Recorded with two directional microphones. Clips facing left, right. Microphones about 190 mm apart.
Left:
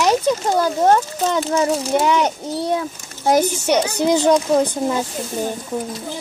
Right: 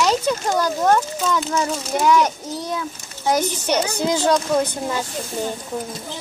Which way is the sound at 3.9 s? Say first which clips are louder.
Left 5 dB; 15° left (ahead or behind).